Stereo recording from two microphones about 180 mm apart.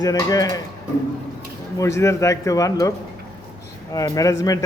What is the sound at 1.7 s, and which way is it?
A man's voice, 15° left (ahead or behind).